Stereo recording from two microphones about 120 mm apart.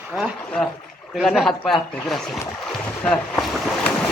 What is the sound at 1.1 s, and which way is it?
Speech, centre (ahead or behind).